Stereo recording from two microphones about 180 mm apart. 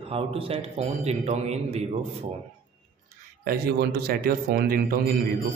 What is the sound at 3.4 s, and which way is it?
A man's voice, 55° right (ahead or behind).